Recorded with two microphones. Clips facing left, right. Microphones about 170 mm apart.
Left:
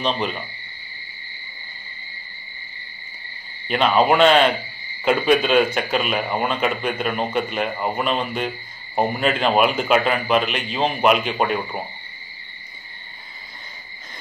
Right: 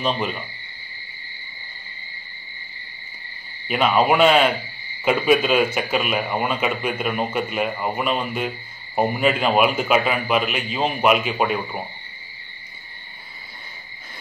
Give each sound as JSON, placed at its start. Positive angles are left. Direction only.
{"t": 0.0, "sound": "owl", "side_deg": -5}
{"t": 3.6, "sound": "a man's voice", "side_deg": -5}